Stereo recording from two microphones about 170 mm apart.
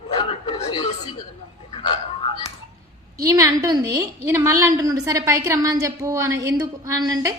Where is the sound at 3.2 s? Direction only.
20° right (ahead or behind).